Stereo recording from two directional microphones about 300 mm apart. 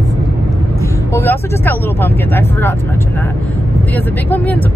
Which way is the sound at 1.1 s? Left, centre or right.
Centre.